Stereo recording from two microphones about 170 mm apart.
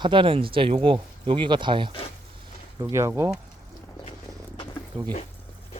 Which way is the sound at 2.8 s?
15° right (ahead or behind).